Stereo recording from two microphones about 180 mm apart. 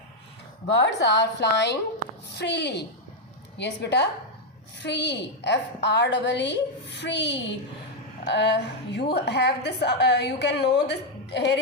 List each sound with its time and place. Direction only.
0.7 s a woman's voice: 75° left (ahead or behind)